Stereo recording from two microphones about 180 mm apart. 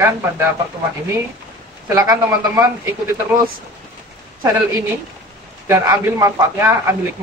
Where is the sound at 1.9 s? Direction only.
20° right (ahead or behind).